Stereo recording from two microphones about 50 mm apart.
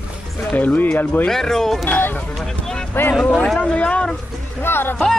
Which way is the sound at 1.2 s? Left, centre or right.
Centre.